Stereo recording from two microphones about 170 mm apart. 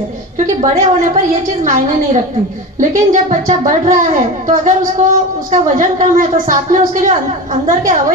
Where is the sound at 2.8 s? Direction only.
50° right (ahead or behind).